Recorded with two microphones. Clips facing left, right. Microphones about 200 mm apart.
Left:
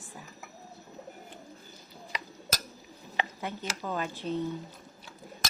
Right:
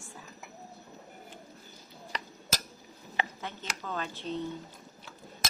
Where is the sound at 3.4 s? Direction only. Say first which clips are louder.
Left 4 dB; 10° left (ahead or behind).